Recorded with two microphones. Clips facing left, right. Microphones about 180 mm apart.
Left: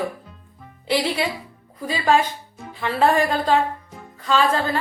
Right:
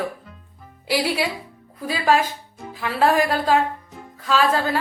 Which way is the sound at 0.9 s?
10° right (ahead or behind).